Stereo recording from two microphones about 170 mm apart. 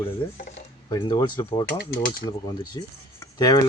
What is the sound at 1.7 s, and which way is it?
Speech, 70° left (ahead or behind).